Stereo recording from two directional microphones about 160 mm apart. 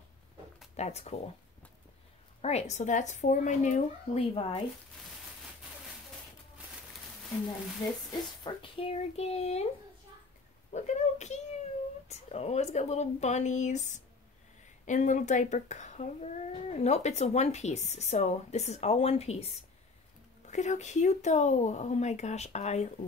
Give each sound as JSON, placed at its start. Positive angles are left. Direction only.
{"t": 0.7, "sound": "speech", "side_deg": 45}
{"t": 2.4, "sound": "speech", "side_deg": 40}
{"t": 8.5, "sound": "speech", "side_deg": 35}
{"t": 10.7, "sound": "speech", "side_deg": 45}